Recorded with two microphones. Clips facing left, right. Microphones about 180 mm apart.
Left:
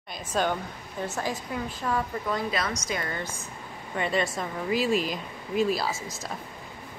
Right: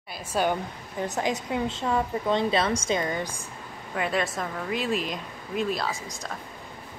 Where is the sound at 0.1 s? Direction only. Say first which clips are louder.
Right 1 dB; 10° right (ahead or behind).